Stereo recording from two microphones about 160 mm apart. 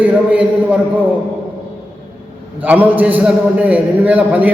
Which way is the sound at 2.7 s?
10° right (ahead or behind).